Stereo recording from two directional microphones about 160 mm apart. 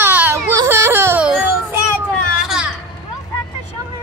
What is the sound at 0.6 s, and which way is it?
Music, 15° right (ahead or behind).